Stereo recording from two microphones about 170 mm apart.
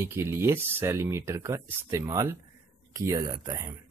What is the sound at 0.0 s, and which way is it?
Speech, 15° right (ahead or behind).